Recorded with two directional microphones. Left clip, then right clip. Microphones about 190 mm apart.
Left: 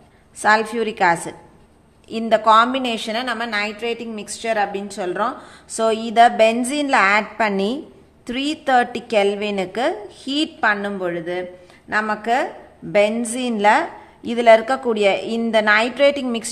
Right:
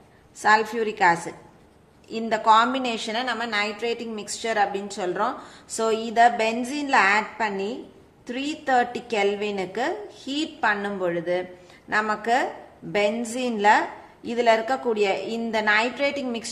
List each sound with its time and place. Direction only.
0.4 s a woman's voice: 25° left (ahead or behind)